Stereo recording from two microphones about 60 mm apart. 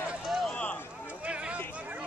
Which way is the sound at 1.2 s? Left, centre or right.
Centre.